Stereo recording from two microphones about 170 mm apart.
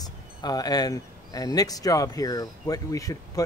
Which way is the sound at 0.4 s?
20° left (ahead or behind).